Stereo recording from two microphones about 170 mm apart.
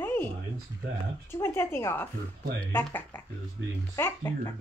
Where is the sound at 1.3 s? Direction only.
15° left (ahead or behind).